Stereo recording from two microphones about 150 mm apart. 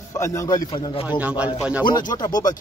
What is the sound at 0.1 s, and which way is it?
Speech, 20° left (ahead or behind).